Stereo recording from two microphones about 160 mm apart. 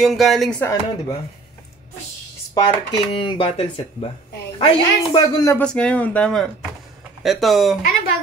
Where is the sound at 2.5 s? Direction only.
30° left (ahead or behind).